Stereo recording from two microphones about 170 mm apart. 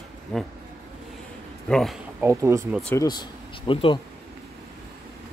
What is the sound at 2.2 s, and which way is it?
Speech, 15° right (ahead or behind).